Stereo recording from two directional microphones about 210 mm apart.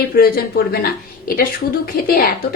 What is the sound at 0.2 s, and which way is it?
Speech, 45° left (ahead or behind).